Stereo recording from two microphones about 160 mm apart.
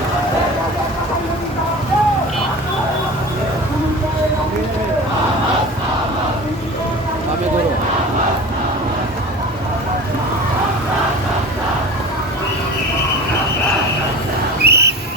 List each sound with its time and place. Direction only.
14.6 s whistle: 90° right